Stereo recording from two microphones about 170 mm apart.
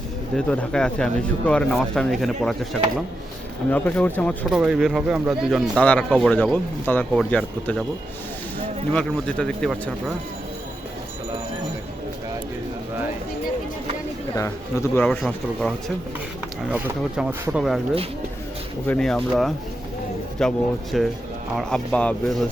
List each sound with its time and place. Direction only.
0.3 s speech: 5° left (ahead or behind)
3.7 s speech: 10° left (ahead or behind)
4.4 s speech: 5° right (ahead or behind)
8.9 s speech: 5° left (ahead or behind)
14.3 s speech: 15° left (ahead or behind)
15.0 s speech: 5° left (ahead or behind)
16.6 s speech: 5° right (ahead or behind)
18.9 s speech: 5° left (ahead or behind)